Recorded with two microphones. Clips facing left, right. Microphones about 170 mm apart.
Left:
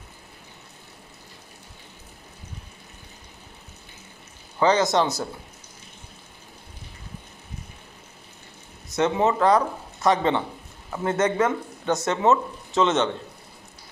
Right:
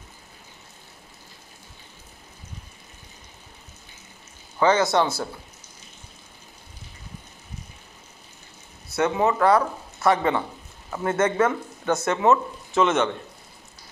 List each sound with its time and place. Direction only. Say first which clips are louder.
4.6 s speech: even; 20° left (ahead or behind)
8.9 s speech: even; 25° left (ahead or behind)